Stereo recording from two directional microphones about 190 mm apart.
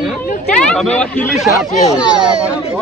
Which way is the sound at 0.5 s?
5° left (ahead or behind).